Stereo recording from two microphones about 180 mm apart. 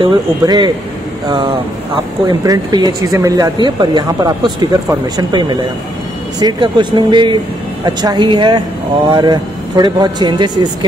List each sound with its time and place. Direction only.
0.0 s speech: 25° right (ahead or behind)